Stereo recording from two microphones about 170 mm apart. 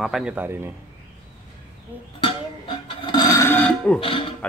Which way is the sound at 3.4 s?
15° left (ahead or behind).